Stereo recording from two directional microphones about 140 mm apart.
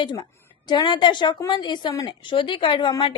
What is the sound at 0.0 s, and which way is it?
A woman's voice, 35° left (ahead or behind).